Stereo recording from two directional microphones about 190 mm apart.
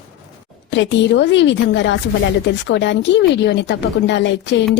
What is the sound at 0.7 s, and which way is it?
Speech, 75° left (ahead or behind).